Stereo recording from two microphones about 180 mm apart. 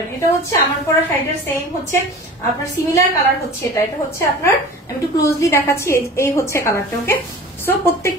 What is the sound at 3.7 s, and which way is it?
A woman's voice, 15° left (ahead or behind).